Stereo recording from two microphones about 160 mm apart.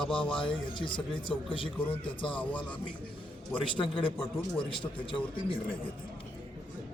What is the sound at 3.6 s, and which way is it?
A man's voice, 35° left (ahead or behind).